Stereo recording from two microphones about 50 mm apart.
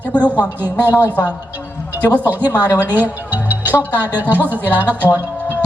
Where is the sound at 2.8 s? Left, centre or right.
Right.